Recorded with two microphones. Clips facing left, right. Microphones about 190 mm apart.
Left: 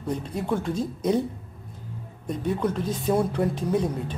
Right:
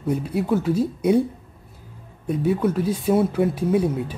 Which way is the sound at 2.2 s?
5° right (ahead or behind).